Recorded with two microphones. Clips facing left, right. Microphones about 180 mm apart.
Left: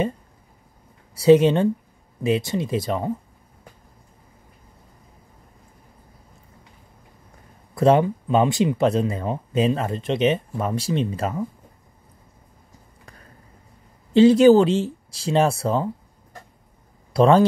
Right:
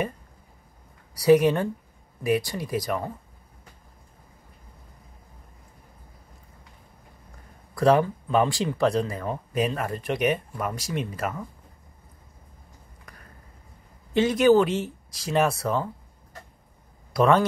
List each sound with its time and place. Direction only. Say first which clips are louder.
1.1 s speech: left 4 dB; 25° left (ahead or behind)
7.7 s speech: left 3 dB; 25° left (ahead or behind)
14.1 s speech: left 6 dB; 30° left (ahead or behind)
17.1 s speech: left 5 dB; 30° left (ahead or behind)